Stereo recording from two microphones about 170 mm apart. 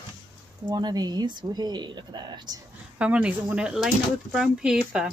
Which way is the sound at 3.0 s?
10° right (ahead or behind).